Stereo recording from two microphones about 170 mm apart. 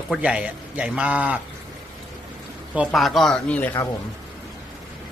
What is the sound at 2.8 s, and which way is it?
Speech, centre (ahead or behind).